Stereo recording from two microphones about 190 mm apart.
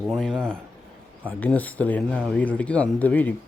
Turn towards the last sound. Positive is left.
turn(degrees=10)  # may be behind; listen again after turning